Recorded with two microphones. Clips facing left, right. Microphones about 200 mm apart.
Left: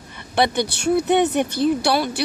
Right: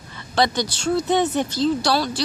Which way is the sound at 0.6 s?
60° left (ahead or behind).